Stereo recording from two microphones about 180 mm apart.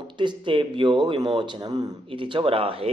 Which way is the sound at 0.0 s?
25° right (ahead or behind).